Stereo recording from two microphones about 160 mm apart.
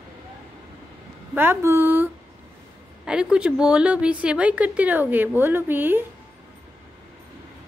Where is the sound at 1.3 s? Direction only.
15° right (ahead or behind).